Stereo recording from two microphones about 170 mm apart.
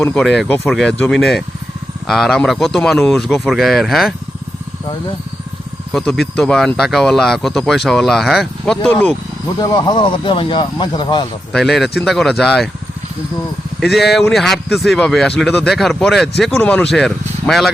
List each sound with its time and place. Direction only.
0.0 s speech: 5° left (ahead or behind)
5.9 s speech: centre (ahead or behind)
9.6 s speech: 25° left (ahead or behind)
11.5 s speech: centre (ahead or behind)
13.7 s speech: centre (ahead or behind)